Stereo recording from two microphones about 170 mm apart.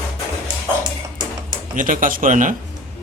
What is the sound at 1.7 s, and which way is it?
Speech, 50° right (ahead or behind).